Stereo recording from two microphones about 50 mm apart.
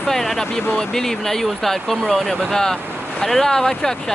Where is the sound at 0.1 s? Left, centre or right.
Centre.